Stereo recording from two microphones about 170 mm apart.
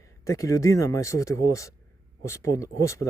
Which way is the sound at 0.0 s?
20° left (ahead or behind).